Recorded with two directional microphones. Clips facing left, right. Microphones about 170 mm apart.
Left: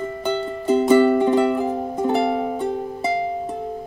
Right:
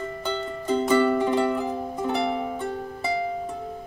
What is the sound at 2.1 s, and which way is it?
Music, 45° left (ahead or behind).